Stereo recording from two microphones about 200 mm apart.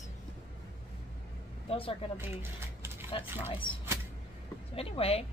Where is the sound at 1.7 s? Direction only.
25° left (ahead or behind).